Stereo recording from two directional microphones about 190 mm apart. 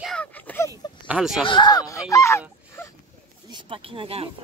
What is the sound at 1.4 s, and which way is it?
Speech, 25° left (ahead or behind).